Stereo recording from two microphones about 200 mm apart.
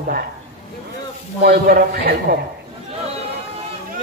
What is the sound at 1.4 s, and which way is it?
Speech, 50° right (ahead or behind).